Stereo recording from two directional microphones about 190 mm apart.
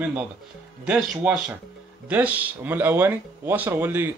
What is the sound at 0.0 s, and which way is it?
Speech, 5° right (ahead or behind).